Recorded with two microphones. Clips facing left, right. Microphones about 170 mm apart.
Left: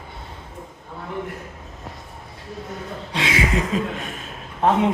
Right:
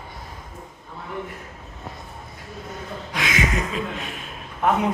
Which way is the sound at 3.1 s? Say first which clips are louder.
Left 2 dB; 30° left (ahead or behind).